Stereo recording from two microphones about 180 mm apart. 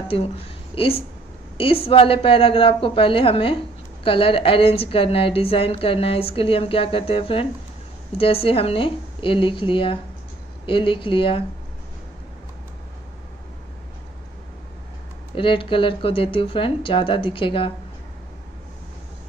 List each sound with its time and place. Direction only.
0.7 s a woman's voice: 30° left (ahead or behind)
15.3 s speech: 30° left (ahead or behind)